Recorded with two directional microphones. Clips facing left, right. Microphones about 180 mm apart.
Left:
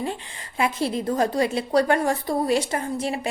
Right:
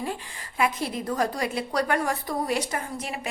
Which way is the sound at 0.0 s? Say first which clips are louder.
Left 3 dB; 25° left (ahead or behind).